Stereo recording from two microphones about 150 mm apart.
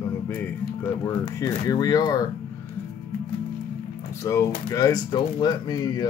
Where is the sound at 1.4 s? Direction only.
25° left (ahead or behind).